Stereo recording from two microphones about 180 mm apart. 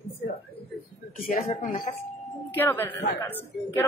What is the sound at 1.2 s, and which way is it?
Speech, 55° left (ahead or behind).